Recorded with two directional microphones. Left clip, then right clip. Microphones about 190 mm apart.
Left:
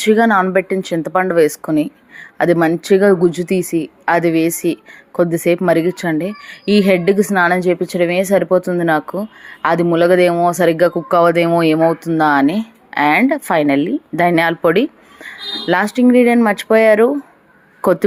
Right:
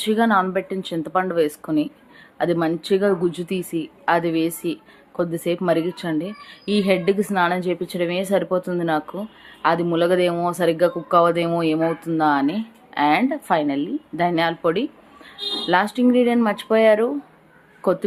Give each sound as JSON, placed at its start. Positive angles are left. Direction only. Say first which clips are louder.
{"t": 0.0, "sound": "a woman's voice", "louder": "left 6 dB", "side_deg": 30}